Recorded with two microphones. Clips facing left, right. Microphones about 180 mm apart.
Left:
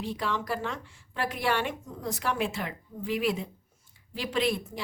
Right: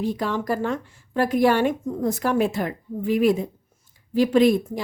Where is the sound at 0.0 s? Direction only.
45° right (ahead or behind).